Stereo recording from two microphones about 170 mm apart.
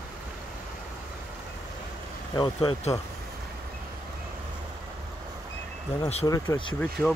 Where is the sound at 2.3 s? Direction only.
25° left (ahead or behind).